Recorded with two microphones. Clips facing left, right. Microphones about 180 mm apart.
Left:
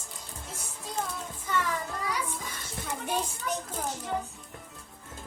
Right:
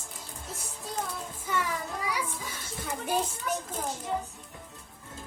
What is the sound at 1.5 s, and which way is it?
Music, 10° right (ahead or behind).